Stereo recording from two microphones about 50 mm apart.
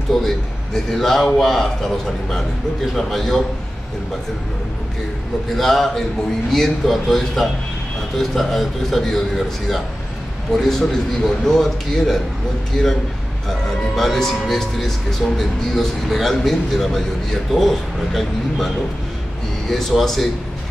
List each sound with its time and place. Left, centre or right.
0.1 s a man's voice: centre
5.6 s a man's voice: centre
10.5 s a man's voice: centre
13.9 s speech: centre
19.9 s speech: centre